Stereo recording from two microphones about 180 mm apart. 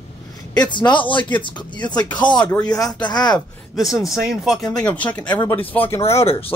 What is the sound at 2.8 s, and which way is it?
Speech, 25° left (ahead or behind).